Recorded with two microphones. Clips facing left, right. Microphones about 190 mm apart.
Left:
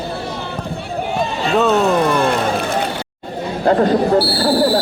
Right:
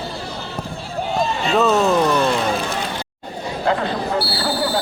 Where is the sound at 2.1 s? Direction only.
55° left (ahead or behind).